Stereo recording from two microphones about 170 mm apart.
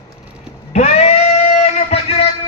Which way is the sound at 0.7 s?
40° left (ahead or behind).